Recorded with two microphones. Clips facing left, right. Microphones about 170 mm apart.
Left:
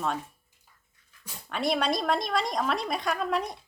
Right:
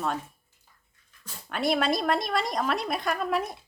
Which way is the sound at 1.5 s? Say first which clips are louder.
Right 1 dB; centre (ahead or behind).